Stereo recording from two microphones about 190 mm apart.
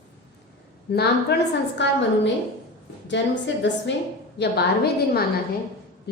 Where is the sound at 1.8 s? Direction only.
70° left (ahead or behind).